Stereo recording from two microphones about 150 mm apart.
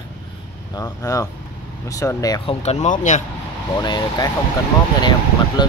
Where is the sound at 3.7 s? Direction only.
30° left (ahead or behind).